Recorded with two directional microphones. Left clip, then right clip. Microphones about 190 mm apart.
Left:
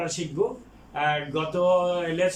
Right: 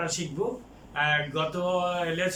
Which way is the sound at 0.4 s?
20° left (ahead or behind).